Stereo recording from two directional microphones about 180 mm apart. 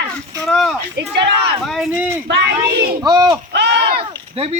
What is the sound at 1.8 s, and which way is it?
Speech, 10° right (ahead or behind).